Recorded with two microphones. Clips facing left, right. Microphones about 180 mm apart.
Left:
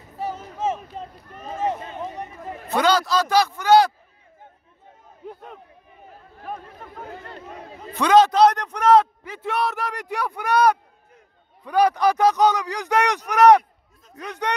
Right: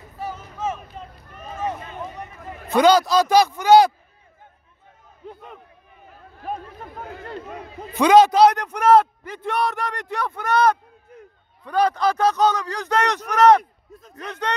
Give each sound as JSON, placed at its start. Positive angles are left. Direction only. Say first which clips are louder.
{"t": 0.2, "sound": "run", "louder": "left 2 dB", "side_deg": 25}
{"t": 2.7, "sound": "a man's voice", "louder": "right 4 dB", "side_deg": -15}
{"t": 5.2, "sound": "a man's voice", "louder": "left 1 dB", "side_deg": 5}
{"t": 7.9, "sound": "a man's voice", "louder": "right 2 dB", "side_deg": -10}